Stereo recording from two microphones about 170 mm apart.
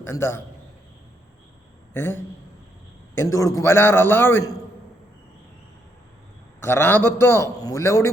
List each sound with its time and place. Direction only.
0.0 s a man's voice: 15° left (ahead or behind)
1.9 s a man's voice: 15° left (ahead or behind)
6.6 s a man's voice: 15° left (ahead or behind)